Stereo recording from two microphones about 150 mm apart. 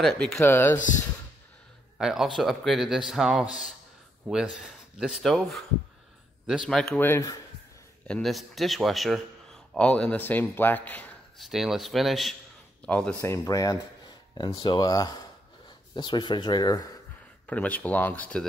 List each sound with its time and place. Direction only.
0.0 s speech: 5° left (ahead or behind)
0.4 s speech: 15° left (ahead or behind)
2.0 s speech: 5° right (ahead or behind)
7.0 s speech: 15° left (ahead or behind)
8.1 s a man's voice: centre (ahead or behind)
11.4 s speech: centre (ahead or behind)
13.2 s speech: 20° left (ahead or behind)
17.5 s speech: 10° left (ahead or behind)